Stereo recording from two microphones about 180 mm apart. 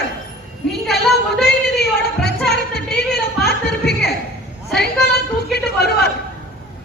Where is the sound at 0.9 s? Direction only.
65° left (ahead or behind).